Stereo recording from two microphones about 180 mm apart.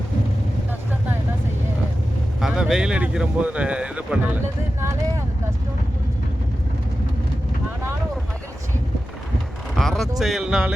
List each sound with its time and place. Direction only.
2.4 s speech: centre (ahead or behind)
4.8 s vehicle: 15° right (ahead or behind)
9.7 s a sound: centre (ahead or behind)
10.2 s speech: centre (ahead or behind)